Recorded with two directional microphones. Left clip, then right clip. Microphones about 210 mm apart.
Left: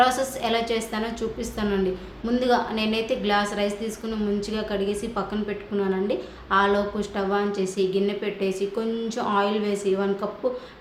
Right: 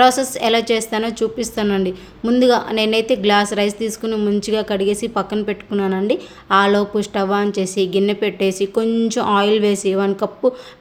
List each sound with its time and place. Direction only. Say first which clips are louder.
0.0 s a woman's voice: right 7 dB; 45° right (ahead or behind)